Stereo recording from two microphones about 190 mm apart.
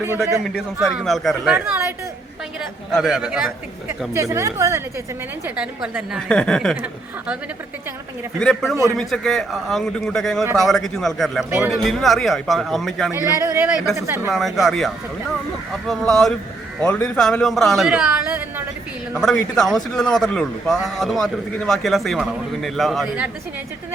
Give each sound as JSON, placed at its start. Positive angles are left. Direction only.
{"t": 0.2, "sound": "a man's voice", "side_deg": 0}
{"t": 4.1, "sound": "speech", "side_deg": -15}
{"t": 5.5, "sound": "a man's voice", "side_deg": -5}
{"t": 8.4, "sound": "a man's voice", "side_deg": 5}
{"t": 13.1, "sound": "speech", "side_deg": -15}
{"t": 14.3, "sound": "a man's voice", "side_deg": 0}